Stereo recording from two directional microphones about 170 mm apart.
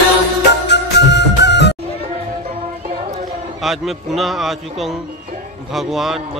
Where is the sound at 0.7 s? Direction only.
90° left.